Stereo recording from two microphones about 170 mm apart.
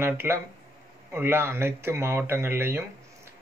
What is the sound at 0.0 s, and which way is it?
Speech, 15° right (ahead or behind).